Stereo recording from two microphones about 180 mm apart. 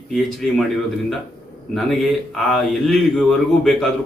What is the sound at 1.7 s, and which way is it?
A man's voice, centre (ahead or behind).